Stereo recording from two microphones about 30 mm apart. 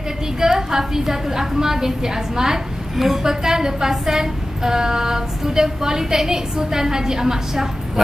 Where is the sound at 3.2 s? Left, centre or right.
Centre.